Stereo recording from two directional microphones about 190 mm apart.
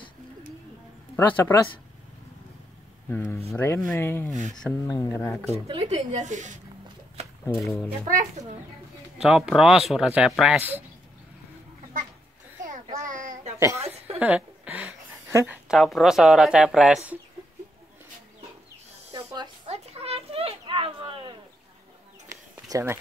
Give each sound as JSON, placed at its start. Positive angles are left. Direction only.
{"t": 1.1, "sound": "speech", "side_deg": 10}
{"t": 3.1, "sound": "speech", "side_deg": 10}
{"t": 5.7, "sound": "speech", "side_deg": -30}
{"t": 7.4, "sound": "speech", "side_deg": 15}
{"t": 8.1, "sound": "speech", "side_deg": -40}
{"t": 9.2, "sound": "speech", "side_deg": -5}
{"t": 13.0, "sound": "a sound", "side_deg": -45}
{"t": 13.6, "sound": "a woman's voice", "side_deg": -15}
{"t": 13.8, "sound": "a sound", "side_deg": -30}
{"t": 14.2, "sound": "a woman's voice", "side_deg": -10}
{"t": 19.0, "sound": "a sound", "side_deg": -25}
{"t": 22.7, "sound": "speech", "side_deg": -15}